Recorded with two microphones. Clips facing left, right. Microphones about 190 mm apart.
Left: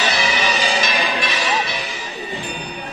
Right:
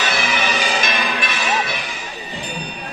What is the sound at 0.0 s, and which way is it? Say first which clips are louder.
Music: left 1 dB; 55° right (ahead or behind).